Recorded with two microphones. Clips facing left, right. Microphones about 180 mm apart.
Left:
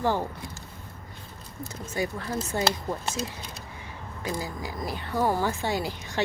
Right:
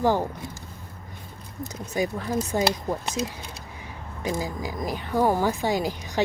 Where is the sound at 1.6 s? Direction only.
15° right (ahead or behind).